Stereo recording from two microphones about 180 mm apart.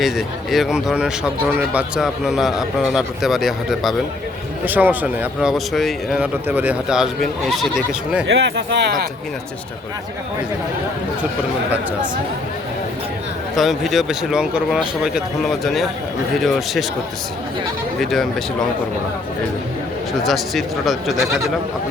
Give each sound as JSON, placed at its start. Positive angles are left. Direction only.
{"t": 0.0, "sound": "speech", "side_deg": 0}
{"t": 8.3, "sound": "speech", "side_deg": -70}
{"t": 13.6, "sound": "speech", "side_deg": 0}
{"t": 18.0, "sound": "speech", "side_deg": 0}
{"t": 20.2, "sound": "speech", "side_deg": 0}